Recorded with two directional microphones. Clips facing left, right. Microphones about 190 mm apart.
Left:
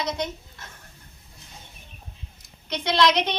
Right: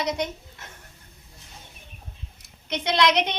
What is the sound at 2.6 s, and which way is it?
Speech, 20° right (ahead or behind).